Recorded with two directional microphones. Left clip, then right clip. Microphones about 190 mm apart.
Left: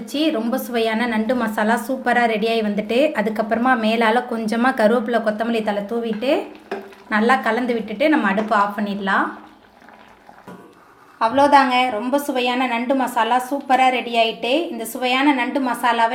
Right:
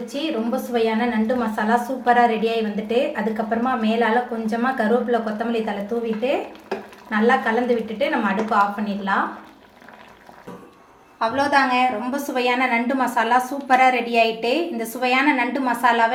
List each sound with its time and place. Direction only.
0.1 s a woman's voice: 50° left (ahead or behind)
7.1 s a woman's voice: 50° left (ahead or behind)
11.2 s a woman's voice: 25° left (ahead or behind)